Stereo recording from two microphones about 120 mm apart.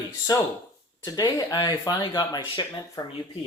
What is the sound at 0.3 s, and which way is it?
Speech, 30° left (ahead or behind).